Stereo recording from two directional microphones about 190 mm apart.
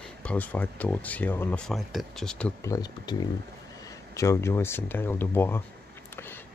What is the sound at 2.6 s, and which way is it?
Speech, 20° left (ahead or behind).